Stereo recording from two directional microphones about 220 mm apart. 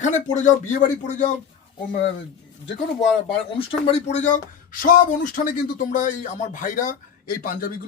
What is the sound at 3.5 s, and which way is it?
Speech, 25° left (ahead or behind).